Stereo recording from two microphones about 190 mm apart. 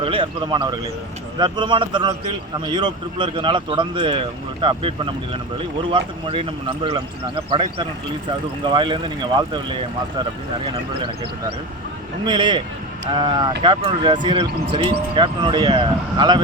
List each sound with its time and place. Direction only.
0.0 s speech: 25° right (ahead or behind)
12.2 s speech: 25° right (ahead or behind)